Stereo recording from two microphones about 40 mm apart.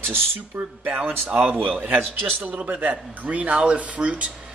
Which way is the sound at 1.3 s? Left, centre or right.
Right.